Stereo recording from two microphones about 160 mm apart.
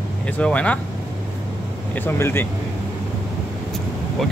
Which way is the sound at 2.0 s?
15° left (ahead or behind).